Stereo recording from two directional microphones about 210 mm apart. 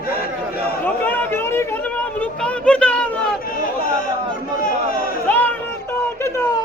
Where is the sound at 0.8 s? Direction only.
10° left (ahead or behind).